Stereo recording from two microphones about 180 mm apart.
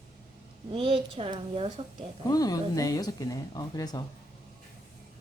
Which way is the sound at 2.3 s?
20° left (ahead or behind).